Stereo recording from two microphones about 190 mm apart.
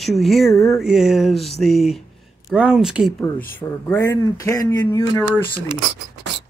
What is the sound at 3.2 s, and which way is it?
Speech, 10° left (ahead or behind).